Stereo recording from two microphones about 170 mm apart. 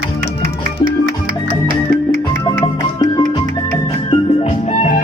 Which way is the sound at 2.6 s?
25° left (ahead or behind).